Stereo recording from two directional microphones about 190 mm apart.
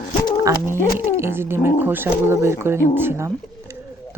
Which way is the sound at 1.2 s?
15° right (ahead or behind).